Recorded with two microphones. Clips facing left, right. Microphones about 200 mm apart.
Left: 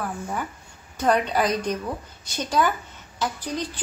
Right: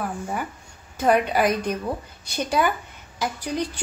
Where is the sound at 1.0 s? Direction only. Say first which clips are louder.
Right 2 dB; 10° right (ahead or behind).